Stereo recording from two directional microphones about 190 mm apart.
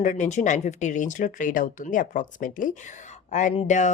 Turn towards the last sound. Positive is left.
turn(degrees=40)  # may be behind; listen again after turning